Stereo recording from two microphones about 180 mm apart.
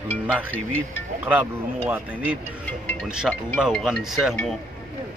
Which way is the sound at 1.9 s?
10° right (ahead or behind).